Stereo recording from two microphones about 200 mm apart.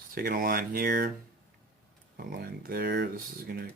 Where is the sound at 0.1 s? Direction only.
45° right (ahead or behind).